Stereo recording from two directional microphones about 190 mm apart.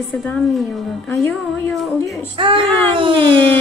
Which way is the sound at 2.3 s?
25° right (ahead or behind).